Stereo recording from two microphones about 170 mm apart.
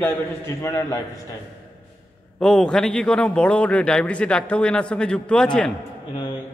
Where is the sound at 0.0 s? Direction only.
15° left (ahead or behind).